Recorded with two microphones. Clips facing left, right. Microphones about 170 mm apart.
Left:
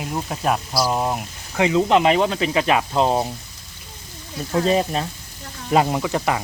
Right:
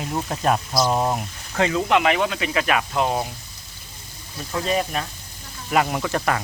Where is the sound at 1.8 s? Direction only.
30° left (ahead or behind).